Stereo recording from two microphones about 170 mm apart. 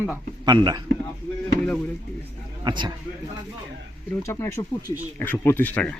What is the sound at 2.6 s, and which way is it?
Speech, 25° right (ahead or behind).